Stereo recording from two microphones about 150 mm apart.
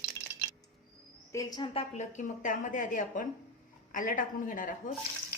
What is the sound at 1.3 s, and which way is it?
Speech, 25° left (ahead or behind).